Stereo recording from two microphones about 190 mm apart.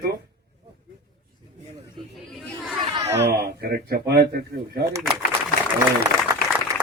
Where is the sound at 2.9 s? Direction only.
20° right (ahead or behind).